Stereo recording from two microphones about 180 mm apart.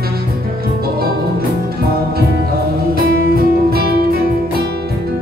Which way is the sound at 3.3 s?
55° right (ahead or behind).